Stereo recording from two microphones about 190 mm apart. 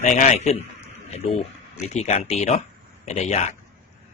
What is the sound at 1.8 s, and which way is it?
Speech, 35° left (ahead or behind).